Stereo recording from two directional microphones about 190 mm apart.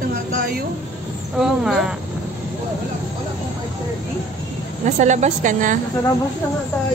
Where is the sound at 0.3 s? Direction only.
50° right (ahead or behind).